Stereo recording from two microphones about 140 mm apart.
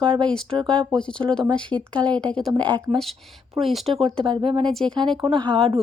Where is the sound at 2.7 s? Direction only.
30° right (ahead or behind).